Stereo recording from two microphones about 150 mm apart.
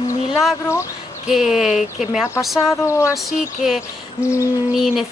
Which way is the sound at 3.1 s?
Centre (ahead or behind).